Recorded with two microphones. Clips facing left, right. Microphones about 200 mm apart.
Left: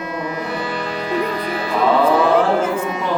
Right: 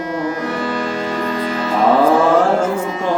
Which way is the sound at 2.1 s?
45° right (ahead or behind).